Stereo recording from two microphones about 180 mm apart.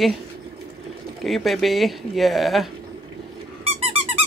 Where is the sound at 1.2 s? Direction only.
Centre (ahead or behind).